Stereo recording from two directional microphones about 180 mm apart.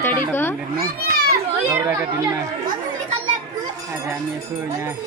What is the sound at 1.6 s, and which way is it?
Speech, 15° right (ahead or behind).